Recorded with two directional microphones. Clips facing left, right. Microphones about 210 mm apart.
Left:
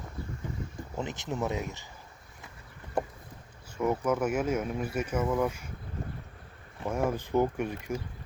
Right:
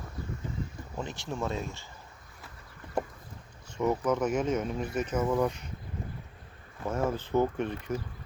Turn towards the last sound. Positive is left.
turn(degrees=10)  # may be behind; listen again after turning